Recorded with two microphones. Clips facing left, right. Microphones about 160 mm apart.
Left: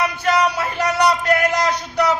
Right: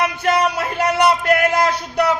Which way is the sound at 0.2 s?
55° right (ahead or behind).